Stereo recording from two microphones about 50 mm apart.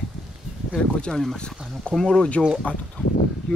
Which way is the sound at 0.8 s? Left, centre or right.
Centre.